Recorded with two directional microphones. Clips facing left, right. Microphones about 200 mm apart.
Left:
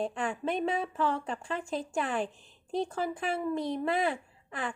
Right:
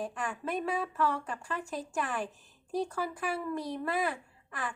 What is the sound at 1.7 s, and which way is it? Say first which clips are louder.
A woman's voice: left 4 dB; 25° left (ahead or behind).